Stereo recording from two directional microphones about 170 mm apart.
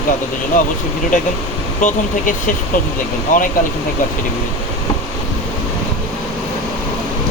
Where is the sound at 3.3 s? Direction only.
50° left (ahead or behind).